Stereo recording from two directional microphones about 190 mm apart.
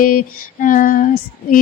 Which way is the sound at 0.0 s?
45° left (ahead or behind).